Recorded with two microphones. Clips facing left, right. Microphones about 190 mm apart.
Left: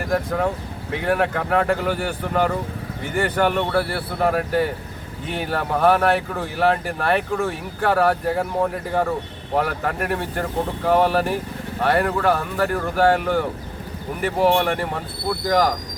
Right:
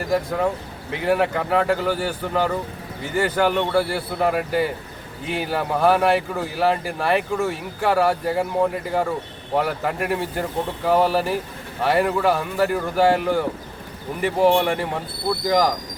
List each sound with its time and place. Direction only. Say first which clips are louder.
0.1 s speech: right 1 dB; centre (ahead or behind)
14.5 s speech: even; 5° right (ahead or behind)